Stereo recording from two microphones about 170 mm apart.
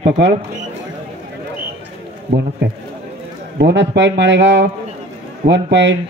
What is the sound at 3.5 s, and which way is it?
A man's voice, 85° right.